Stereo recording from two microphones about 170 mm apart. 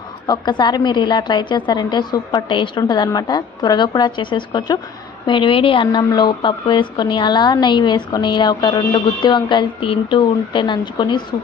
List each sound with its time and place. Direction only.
0.3 s a woman's voice: 25° left (ahead or behind)